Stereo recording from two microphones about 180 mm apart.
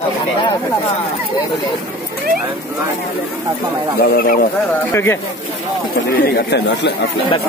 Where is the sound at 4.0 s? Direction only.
55° left (ahead or behind).